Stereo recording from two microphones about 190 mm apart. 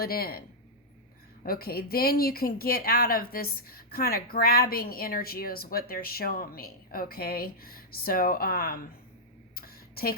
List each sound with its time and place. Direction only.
0.0 s speech: 50° left (ahead or behind)
1.5 s speech: 50° left (ahead or behind)
9.6 s a sound: 55° left (ahead or behind)